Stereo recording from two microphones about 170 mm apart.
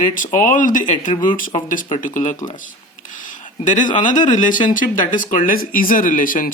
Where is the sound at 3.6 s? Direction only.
50° left (ahead or behind).